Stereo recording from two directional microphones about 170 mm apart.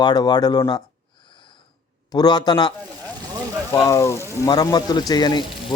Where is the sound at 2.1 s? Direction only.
25° left (ahead or behind).